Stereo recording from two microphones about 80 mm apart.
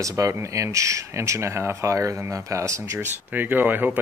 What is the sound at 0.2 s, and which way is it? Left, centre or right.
Speech, right.